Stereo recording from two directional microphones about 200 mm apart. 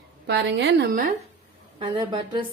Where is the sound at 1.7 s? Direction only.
25° right (ahead or behind).